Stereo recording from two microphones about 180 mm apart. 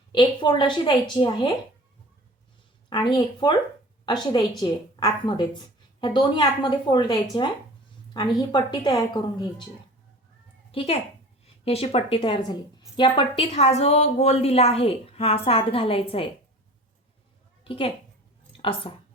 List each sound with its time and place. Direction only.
0.1 s a woman's voice: 25° left (ahead or behind)
2.9 s a woman's voice: 25° left (ahead or behind)
10.7 s a woman's voice: 30° left (ahead or behind)
17.6 s a woman's voice: 30° left (ahead or behind)